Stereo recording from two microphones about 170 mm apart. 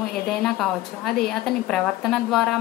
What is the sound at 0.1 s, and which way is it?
A woman's voice, centre (ahead or behind).